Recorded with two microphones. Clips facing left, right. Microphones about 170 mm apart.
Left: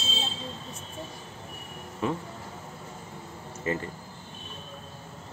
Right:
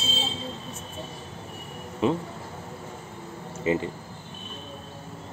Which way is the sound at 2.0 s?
20° right (ahead or behind).